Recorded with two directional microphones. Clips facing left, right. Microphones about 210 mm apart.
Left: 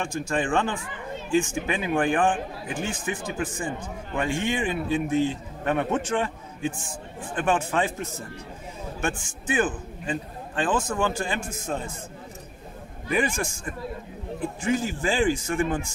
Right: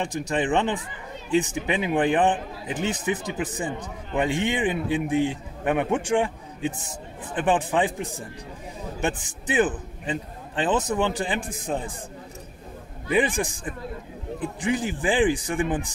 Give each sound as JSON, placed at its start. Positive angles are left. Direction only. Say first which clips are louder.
{"t": 0.0, "sound": "a man's voice", "louder": "right 1 dB", "side_deg": -20}
{"t": 13.1, "sound": "speech", "louder": "right 3 dB", "side_deg": -15}